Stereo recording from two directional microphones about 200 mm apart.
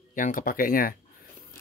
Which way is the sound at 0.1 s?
40° left (ahead or behind).